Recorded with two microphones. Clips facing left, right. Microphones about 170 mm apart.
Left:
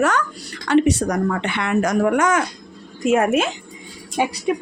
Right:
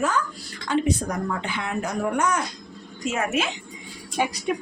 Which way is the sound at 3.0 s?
60° left (ahead or behind).